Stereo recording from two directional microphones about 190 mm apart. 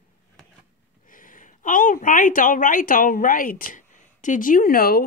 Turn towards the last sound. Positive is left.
turn(degrees=50)  # may be behind; listen again after turning